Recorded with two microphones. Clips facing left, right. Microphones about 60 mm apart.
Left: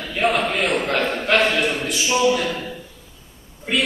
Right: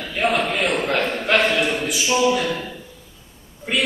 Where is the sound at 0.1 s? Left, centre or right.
Centre.